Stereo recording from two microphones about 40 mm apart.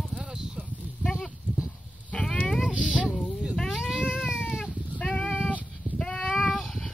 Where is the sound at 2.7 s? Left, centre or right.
Right.